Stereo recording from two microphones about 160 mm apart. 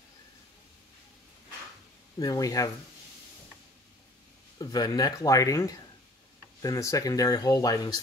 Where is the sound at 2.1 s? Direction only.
25° left (ahead or behind).